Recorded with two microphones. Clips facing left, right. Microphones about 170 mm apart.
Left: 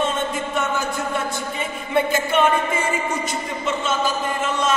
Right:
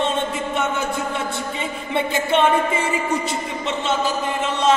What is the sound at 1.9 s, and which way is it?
Speech, 25° right (ahead or behind).